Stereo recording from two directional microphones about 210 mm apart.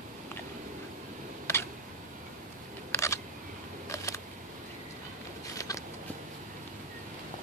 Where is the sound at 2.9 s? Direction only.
15° left (ahead or behind).